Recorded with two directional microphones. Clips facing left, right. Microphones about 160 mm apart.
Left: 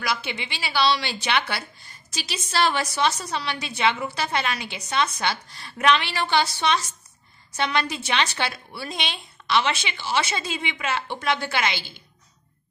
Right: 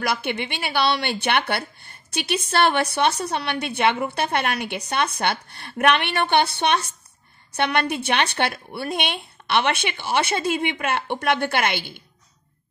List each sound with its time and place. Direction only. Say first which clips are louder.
0.0 s a woman's voice: right 4 dB; 55° right (ahead or behind)